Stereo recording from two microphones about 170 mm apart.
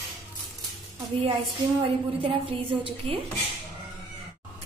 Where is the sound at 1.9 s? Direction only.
30° right (ahead or behind).